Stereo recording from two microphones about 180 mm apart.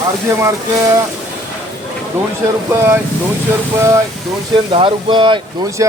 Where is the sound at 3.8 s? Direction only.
15° right (ahead or behind).